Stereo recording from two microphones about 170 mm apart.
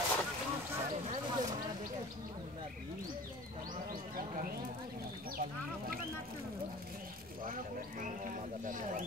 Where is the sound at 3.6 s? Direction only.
55° right (ahead or behind).